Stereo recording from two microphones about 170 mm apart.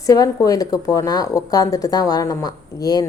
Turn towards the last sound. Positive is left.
turn(degrees=25)  # may be behind; listen again after turning